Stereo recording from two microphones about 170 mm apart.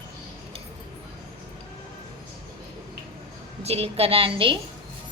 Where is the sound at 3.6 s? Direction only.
35° right (ahead or behind).